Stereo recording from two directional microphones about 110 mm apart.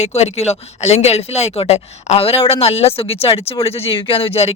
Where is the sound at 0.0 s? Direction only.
75° left (ahead or behind).